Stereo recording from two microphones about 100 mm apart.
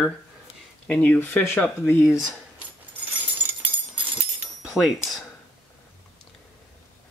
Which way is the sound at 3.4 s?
15° right (ahead or behind).